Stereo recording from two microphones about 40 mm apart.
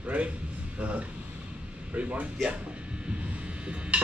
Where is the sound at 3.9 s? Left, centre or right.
Right.